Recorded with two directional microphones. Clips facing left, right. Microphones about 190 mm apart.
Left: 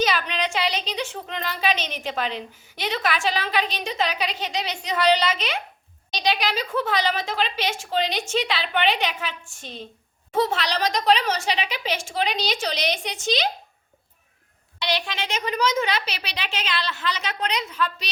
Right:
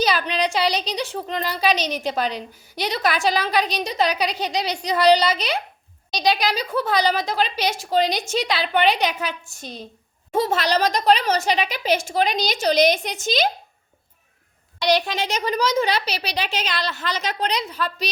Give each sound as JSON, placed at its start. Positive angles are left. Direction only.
{"t": 0.0, "sound": "a woman's voice", "side_deg": -35}
{"t": 14.8, "sound": "speech", "side_deg": -40}